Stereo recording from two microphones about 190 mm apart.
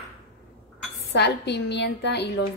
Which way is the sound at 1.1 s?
65° left (ahead or behind).